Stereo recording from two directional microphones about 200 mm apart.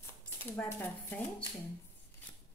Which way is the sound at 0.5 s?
10° left (ahead or behind).